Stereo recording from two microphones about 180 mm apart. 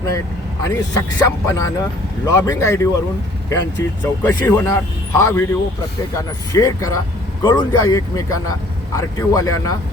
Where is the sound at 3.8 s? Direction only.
15° left (ahead or behind).